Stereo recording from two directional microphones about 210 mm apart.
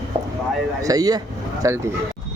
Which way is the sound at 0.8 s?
15° right (ahead or behind).